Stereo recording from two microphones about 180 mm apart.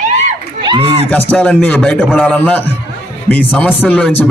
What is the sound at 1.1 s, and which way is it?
A man's voice, 5° left (ahead or behind).